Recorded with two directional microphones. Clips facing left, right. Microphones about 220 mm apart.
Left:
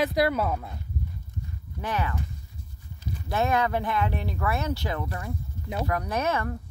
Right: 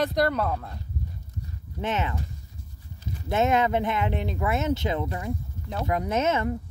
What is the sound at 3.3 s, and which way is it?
Speech, 20° right (ahead or behind).